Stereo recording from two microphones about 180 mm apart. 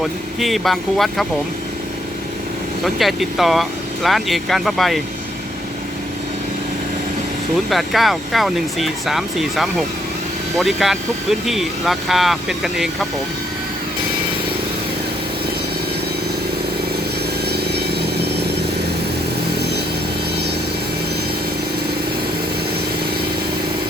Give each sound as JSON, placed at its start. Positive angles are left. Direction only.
{"t": 0.0, "sound": "speech", "side_deg": 0}
{"t": 2.8, "sound": "speech", "side_deg": 0}
{"t": 7.7, "sound": "speech", "side_deg": 0}
{"t": 17.5, "sound": "vehicle", "side_deg": -65}